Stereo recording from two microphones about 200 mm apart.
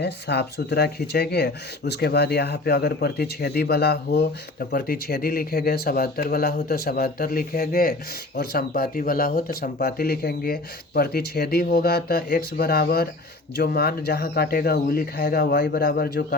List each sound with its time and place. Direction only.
0.0 s speech: 55° left (ahead or behind)